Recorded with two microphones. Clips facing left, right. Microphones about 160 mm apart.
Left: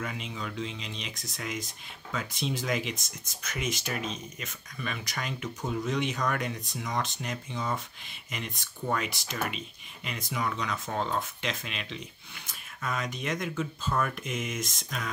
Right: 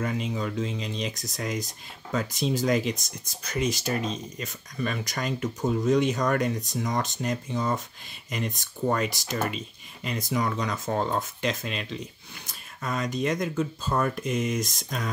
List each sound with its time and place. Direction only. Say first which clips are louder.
0.0 s speech: right 7 dB; 40° right (ahead or behind)